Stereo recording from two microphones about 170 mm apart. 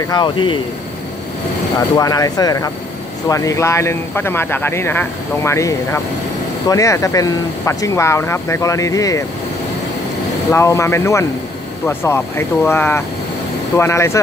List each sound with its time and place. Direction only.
0.1 s speech: 30° left (ahead or behind)
1.8 s speech: 20° left (ahead or behind)
10.5 s speech: 15° left (ahead or behind)